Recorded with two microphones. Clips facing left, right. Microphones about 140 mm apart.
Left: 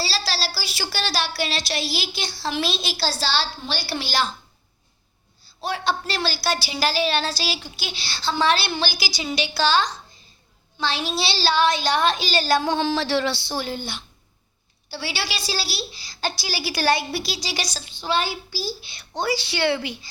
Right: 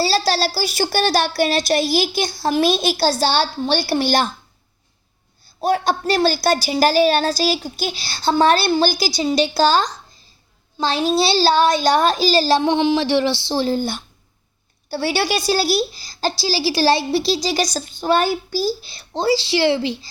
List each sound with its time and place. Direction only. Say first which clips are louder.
0.0 s a woman's voice: right 9 dB; 45° right (ahead or behind)
5.5 s a woman's voice: right 7 dB; 45° right (ahead or behind); by 20.1 s 30° right (ahead or behind)